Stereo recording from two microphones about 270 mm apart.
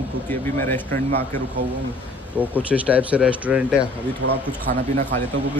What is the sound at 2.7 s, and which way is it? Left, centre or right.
Speech, centre.